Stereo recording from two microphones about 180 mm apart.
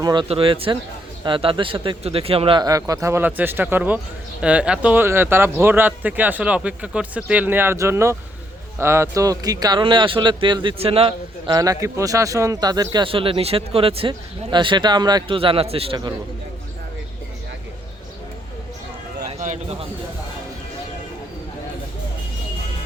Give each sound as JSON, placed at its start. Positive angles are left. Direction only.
{"t": 0.0, "sound": "speech", "side_deg": -25}
{"t": 19.4, "sound": "a man's voice", "side_deg": -40}